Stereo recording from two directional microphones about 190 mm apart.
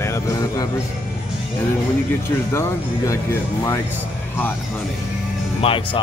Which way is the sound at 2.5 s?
15° left (ahead or behind).